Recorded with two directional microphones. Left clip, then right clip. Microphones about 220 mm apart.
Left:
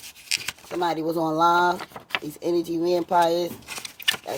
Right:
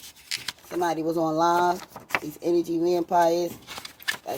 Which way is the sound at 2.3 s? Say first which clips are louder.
Even; 20° left (ahead or behind).